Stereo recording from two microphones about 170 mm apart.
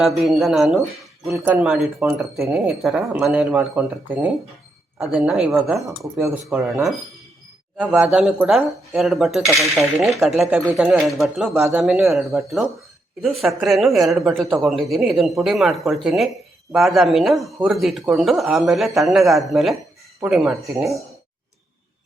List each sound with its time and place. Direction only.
0.2 s speech: centre (ahead or behind)
1.2 s speech: 15° right (ahead or behind); by 5.8 s centre (ahead or behind)
6.0 s speech: 15° right (ahead or behind)
7.9 s speech: 5° right (ahead or behind)